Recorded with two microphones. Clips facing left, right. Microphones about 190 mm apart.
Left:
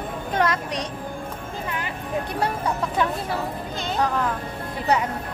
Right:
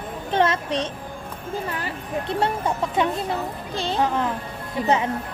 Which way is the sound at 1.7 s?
35° right (ahead or behind).